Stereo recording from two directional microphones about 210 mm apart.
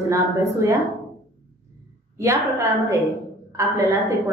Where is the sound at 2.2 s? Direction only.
15° right (ahead or behind).